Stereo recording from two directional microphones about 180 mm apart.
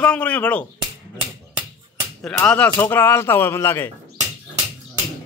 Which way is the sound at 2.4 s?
5° left (ahead or behind).